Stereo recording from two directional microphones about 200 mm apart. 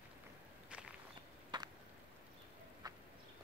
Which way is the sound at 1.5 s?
20° right (ahead or behind).